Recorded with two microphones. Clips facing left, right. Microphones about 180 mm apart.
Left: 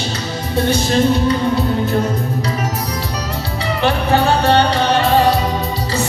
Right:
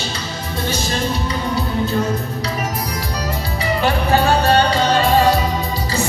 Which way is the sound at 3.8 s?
20° left (ahead or behind).